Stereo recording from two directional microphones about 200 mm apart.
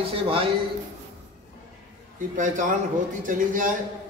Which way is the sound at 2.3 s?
40° right (ahead or behind).